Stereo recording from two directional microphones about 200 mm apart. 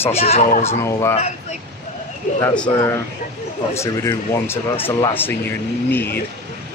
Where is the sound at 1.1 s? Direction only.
35° left (ahead or behind).